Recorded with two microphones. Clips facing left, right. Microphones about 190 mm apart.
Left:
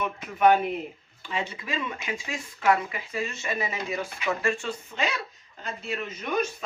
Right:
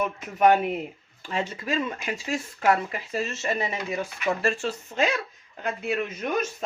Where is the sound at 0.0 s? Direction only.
45° right (ahead or behind).